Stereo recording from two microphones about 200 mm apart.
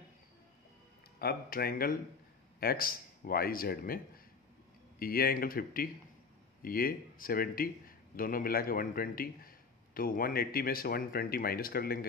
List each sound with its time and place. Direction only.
1.2 s speech: 50° left (ahead or behind)